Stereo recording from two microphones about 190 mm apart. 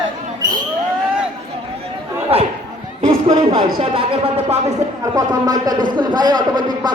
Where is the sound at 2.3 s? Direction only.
30° right (ahead or behind).